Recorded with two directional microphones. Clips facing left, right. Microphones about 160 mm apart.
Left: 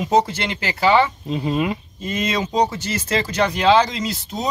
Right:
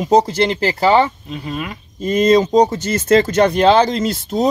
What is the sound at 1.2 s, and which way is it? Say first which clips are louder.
Speech: left 5 dB; 25° left (ahead or behind).